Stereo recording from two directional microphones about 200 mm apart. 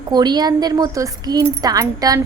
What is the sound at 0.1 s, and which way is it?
A woman's voice, 20° right (ahead or behind).